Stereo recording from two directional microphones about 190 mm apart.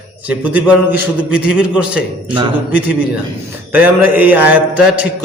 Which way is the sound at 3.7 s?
10° right (ahead or behind).